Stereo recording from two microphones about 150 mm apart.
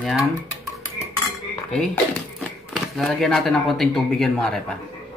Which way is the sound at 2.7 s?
Centre (ahead or behind).